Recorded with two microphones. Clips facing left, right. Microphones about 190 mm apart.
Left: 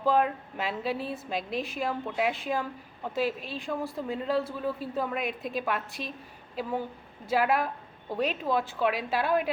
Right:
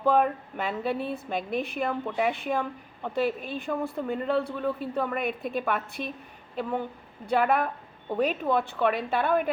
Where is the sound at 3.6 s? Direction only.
Centre (ahead or behind).